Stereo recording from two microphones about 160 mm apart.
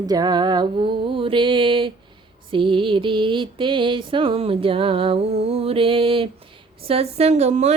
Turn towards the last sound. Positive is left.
turn(degrees=-45)  # may be behind; listen again after turning